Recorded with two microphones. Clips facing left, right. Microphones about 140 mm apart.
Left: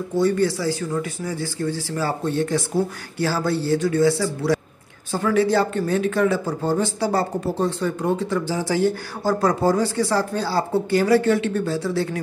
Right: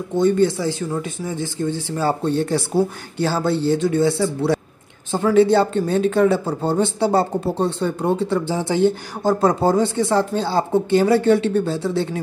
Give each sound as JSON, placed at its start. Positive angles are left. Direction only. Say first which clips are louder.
{"t": 0.1, "sound": "speech", "louder": "right 3 dB", "side_deg": -25}